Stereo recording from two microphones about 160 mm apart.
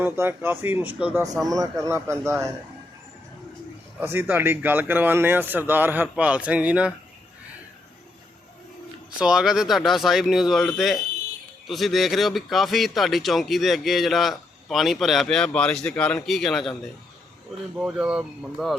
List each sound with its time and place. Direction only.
0.0 s speech: 15° right (ahead or behind)
1.5 s speech: 20° right (ahead or behind)
4.0 s speech: 15° right (ahead or behind)
9.1 s a man's voice: 5° right (ahead or behind)
17.7 s a man's voice: 5° right (ahead or behind)